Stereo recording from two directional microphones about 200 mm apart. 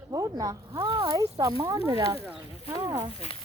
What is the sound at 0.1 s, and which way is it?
Speech, 15° right (ahead or behind).